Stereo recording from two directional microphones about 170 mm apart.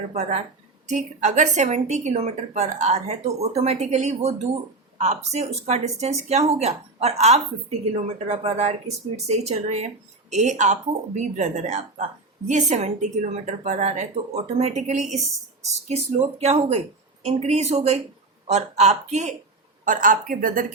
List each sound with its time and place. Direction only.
0.1 s a woman's voice: 40° right (ahead or behind)
19.8 s a woman's voice: 50° right (ahead or behind)